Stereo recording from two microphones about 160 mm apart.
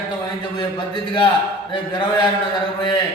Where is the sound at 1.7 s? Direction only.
30° left (ahead or behind).